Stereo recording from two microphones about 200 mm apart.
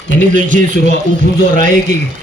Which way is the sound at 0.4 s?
40° right (ahead or behind).